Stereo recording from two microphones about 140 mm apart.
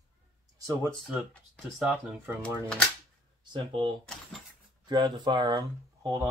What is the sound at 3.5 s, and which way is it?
Speech, 35° right (ahead or behind).